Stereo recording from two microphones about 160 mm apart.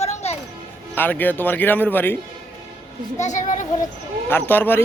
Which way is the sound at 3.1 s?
50° left (ahead or behind).